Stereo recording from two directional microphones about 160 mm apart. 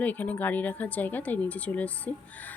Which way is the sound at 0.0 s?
10° left (ahead or behind).